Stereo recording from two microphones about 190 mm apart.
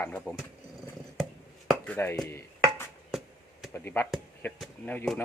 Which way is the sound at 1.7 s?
10° left (ahead or behind).